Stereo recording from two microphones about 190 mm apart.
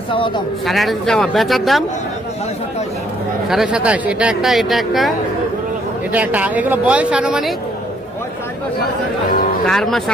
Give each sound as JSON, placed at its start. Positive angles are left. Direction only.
{"t": 0.1, "sound": "speech", "side_deg": 25}
{"t": 0.6, "sound": "speech", "side_deg": 0}
{"t": 3.5, "sound": "speech", "side_deg": -5}
{"t": 9.6, "sound": "speech", "side_deg": 0}